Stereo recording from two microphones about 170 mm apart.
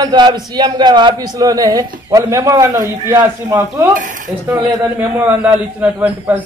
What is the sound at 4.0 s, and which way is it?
Speech, 50° right (ahead or behind).